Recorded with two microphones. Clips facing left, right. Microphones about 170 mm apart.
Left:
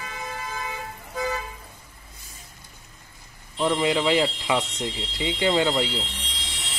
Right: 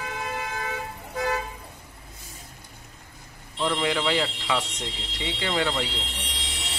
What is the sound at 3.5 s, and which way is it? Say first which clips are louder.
Speech: left 3 dB; 15° left (ahead or behind).